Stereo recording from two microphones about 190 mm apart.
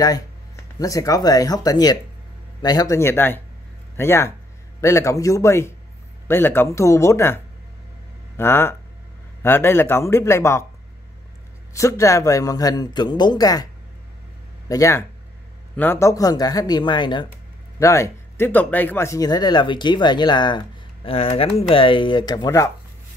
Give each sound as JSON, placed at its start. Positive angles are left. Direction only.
{"t": 0.7, "sound": "speech", "side_deg": 15}
{"t": 8.4, "sound": "speech", "side_deg": 10}
{"t": 11.7, "sound": "speech", "side_deg": 15}
{"t": 14.7, "sound": "speech", "side_deg": 15}